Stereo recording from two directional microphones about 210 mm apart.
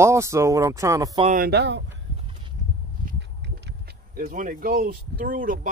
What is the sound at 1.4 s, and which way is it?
Speech, 50° right (ahead or behind).